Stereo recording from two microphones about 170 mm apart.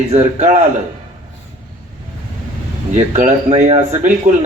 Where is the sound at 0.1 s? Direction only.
45° right (ahead or behind).